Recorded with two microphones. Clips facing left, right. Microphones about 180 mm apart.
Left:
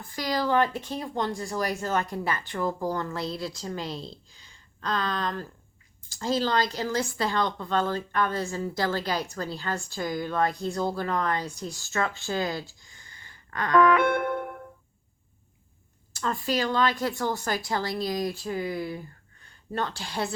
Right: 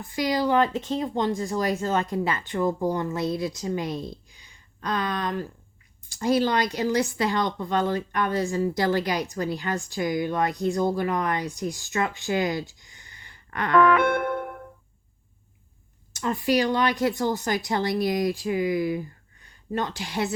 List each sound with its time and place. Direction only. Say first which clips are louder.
0.0 s speech: right 4 dB; 20° right (ahead or behind)
4.1 s a sound: right 5 dB; 15° right (ahead or behind)
6.1 s speech: right 3 dB; 15° right (ahead or behind)
14.1 s music: right 1 dB; 85° right
16.1 s speech: right 5 dB; 20° right (ahead or behind)